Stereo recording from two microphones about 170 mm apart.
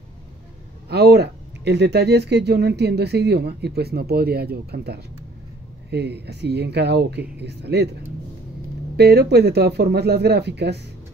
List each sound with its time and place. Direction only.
0.8 s speech: 70° right (ahead or behind)
8.9 s speech: 70° right (ahead or behind)